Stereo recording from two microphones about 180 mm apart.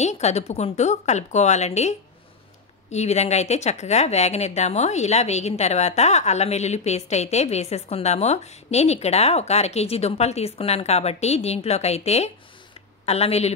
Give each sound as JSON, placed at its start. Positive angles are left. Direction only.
{"t": 0.0, "sound": "speech", "side_deg": 40}